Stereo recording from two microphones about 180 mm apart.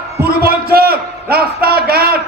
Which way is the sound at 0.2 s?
55° right (ahead or behind).